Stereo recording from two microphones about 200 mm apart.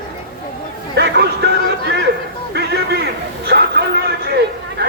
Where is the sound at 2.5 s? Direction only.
55° right (ahead or behind).